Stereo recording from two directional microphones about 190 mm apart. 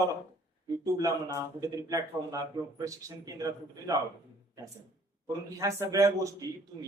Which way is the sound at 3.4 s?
15° right (ahead or behind).